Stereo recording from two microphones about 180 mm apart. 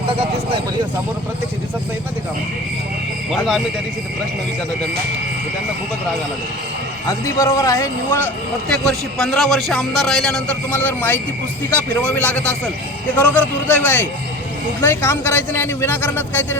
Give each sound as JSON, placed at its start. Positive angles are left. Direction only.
{"t": 7.1, "sound": "speech", "side_deg": 15}
{"t": 8.7, "sound": "a man's voice", "side_deg": 5}